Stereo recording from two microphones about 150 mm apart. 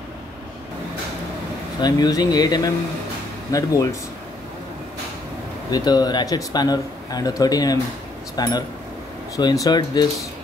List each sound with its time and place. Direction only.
1.8 s a man's voice: 25° left (ahead or behind)
5.7 s a man's voice: 25° left (ahead or behind)